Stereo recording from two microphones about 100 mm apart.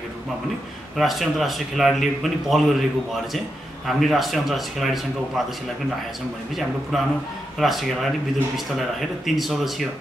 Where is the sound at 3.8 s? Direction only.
Centre (ahead or behind).